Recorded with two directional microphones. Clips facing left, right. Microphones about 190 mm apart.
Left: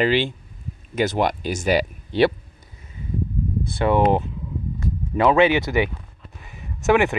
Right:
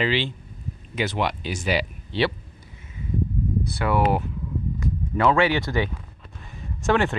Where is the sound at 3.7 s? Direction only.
25° left (ahead or behind).